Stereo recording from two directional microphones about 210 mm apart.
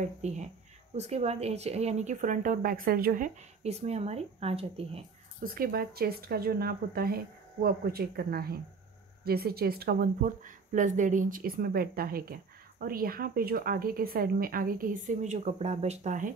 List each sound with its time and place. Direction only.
0.0 s speech: 35° right (ahead or behind)
5.4 s speech: 45° right (ahead or behind)